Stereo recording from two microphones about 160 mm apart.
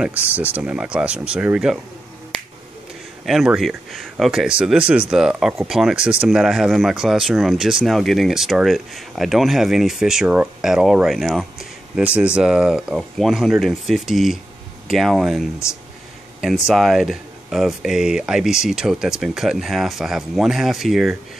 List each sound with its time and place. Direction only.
0.0 s speech: 10° right (ahead or behind)
3.3 s speech: centre (ahead or behind)
15.6 s speech: 15° left (ahead or behind)
16.3 s speech: 5° right (ahead or behind)